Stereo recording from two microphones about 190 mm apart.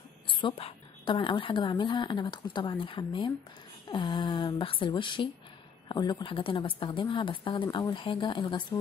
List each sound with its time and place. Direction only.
0.3 s a woman's voice: 25° left (ahead or behind)